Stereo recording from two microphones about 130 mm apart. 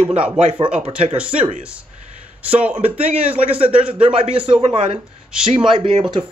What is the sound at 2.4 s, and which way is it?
Speech, 10° right (ahead or behind).